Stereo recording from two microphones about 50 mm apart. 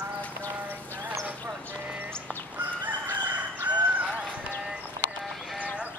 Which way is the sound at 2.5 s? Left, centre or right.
Right.